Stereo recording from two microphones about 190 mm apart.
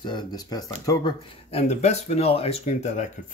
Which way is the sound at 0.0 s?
25° left (ahead or behind).